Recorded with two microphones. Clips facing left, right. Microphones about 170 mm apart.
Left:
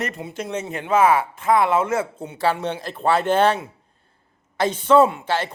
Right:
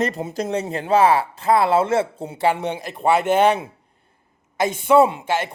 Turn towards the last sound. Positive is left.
turn(degrees=-10)  # may be behind; listen again after turning